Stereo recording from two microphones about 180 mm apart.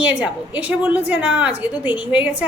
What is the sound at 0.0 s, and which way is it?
A woman's voice, 10° right (ahead or behind).